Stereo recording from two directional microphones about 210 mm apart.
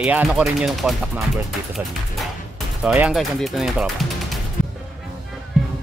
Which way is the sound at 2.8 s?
5° right (ahead or behind).